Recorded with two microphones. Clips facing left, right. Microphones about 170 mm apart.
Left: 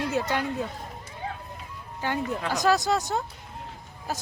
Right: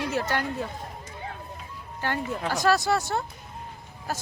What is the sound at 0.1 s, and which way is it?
Speech, 20° left (ahead or behind).